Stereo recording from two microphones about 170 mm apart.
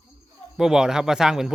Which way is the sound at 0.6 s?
5° right (ahead or behind).